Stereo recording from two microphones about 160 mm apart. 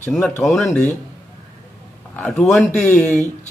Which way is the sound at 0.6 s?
15° left (ahead or behind).